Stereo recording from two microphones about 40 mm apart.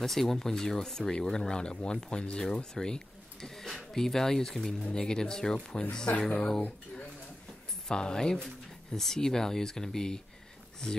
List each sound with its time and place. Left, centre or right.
0.0 s speech: centre
6.1 s speech: left
7.9 s speech: centre